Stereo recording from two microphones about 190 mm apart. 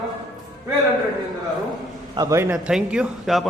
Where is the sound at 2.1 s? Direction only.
20° right (ahead or behind).